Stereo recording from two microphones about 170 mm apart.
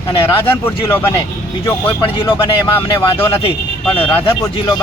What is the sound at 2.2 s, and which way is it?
Speech, 20° left (ahead or behind).